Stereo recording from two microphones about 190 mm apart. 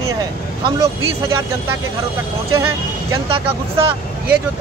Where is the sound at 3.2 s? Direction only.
30° right (ahead or behind).